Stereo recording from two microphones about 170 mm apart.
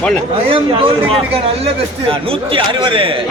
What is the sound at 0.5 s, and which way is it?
Speech, 30° right (ahead or behind).